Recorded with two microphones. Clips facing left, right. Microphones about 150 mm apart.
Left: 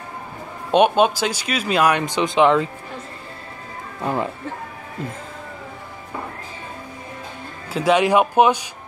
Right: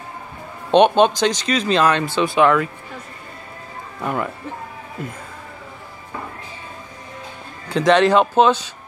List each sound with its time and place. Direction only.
0.7 s speech: 5° left (ahead or behind); by 2.7 s 20° left (ahead or behind)
4.0 s speech: 25° left (ahead or behind)
7.7 s speech: 10° left (ahead or behind)